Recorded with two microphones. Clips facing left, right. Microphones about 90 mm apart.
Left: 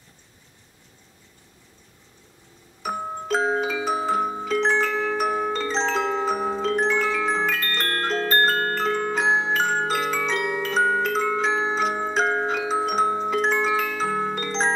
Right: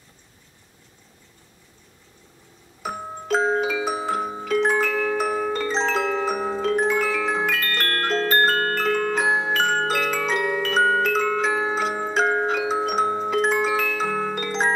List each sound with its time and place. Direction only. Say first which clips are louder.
2.8 s music: left 2 dB; centre (ahead or behind)
8.0 s glockenspiel: right 1 dB; centre (ahead or behind)